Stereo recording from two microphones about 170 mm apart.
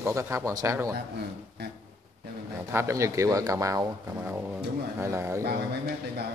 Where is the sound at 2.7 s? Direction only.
15° right (ahead or behind).